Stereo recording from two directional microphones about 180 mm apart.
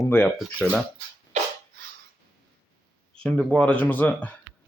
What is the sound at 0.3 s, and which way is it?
Speech, centre (ahead or behind).